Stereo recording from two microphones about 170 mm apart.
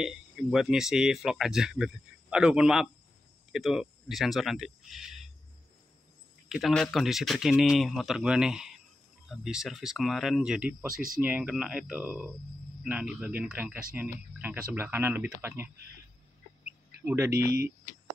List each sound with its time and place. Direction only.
0.0 s speech: centre (ahead or behind)
6.5 s speech: centre (ahead or behind); by 15.7 s 15° right (ahead or behind)
16.6 s duck: 15° right (ahead or behind)
17.3 s speech: 70° right (ahead or behind)